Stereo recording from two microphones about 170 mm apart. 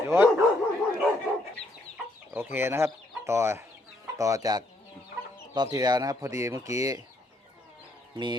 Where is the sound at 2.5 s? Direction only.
15° right (ahead or behind).